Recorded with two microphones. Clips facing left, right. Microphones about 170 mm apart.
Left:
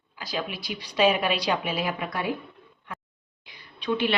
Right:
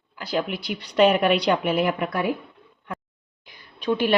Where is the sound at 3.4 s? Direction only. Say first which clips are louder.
Right 5 dB; 45° right (ahead or behind).